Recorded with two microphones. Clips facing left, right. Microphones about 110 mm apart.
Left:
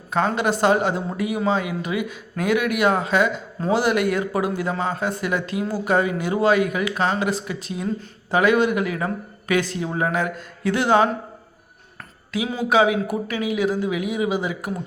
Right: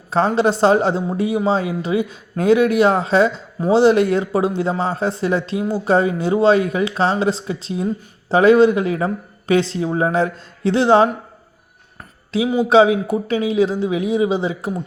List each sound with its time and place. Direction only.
0.1 s speech: 30° right (ahead or behind)
12.6 s speech: 30° right (ahead or behind)